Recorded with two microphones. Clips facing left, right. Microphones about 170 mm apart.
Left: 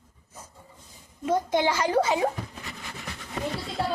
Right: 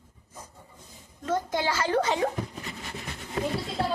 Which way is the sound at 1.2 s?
15° left (ahead or behind).